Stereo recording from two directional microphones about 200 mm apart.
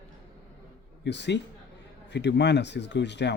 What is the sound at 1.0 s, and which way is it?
Speech, 60° left (ahead or behind).